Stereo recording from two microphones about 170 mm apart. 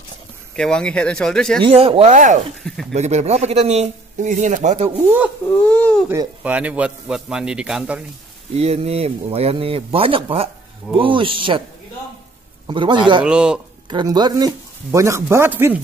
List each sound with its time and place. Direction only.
0.6 s speech: 5° left (ahead or behind)
1.6 s speech: 35° right (ahead or behind)
2.6 s speech: 5° left (ahead or behind)
2.9 s speech: 40° right (ahead or behind)
4.9 s a man's voice: 10° right (ahead or behind)
5.6 s a sound: 5° left (ahead or behind)
6.0 s a man's voice: 10° right (ahead or behind)
8.5 s speech: 35° right (ahead or behind)
12.6 s a man's voice: 30° right (ahead or behind)
13.2 s speech: 5° right (ahead or behind)
13.8 s a man's voice: 25° right (ahead or behind)